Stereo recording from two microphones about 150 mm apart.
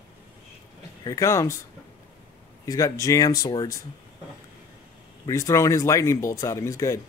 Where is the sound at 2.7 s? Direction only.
25° left (ahead or behind).